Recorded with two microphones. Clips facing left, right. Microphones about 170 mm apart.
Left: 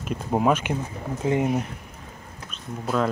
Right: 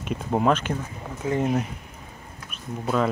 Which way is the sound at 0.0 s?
Centre (ahead or behind).